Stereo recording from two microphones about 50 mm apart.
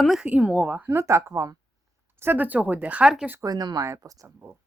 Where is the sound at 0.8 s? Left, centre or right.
Right.